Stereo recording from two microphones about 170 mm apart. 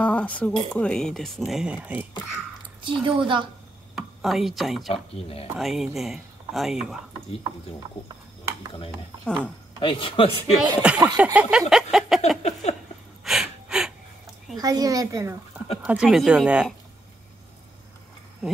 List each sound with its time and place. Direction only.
0.0 s speech: 10° left (ahead or behind); by 2.0 s 5° right (ahead or behind)
2.8 s a woman's voice: 30° right (ahead or behind)
3.9 s speech: centre (ahead or behind)
4.9 s a man's voice: 35° left (ahead or behind)
5.6 s speech: centre (ahead or behind)
9.2 s speech: centre (ahead or behind)
9.8 s a man's voice: 30° left (ahead or behind)
10.6 s speech: 5° right (ahead or behind)
13.2 s a sound: centre (ahead or behind)
14.6 s a woman's voice: 20° right (ahead or behind)
15.8 s speech: 5° right (ahead or behind)